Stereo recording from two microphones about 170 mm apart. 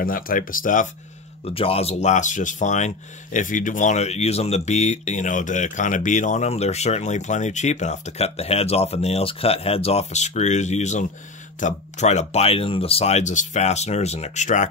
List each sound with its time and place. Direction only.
0.0 s speech: 55° left (ahead or behind)
1.4 s speech: 35° left (ahead or behind)